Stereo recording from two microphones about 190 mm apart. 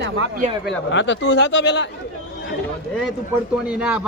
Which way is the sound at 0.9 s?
70° left (ahead or behind).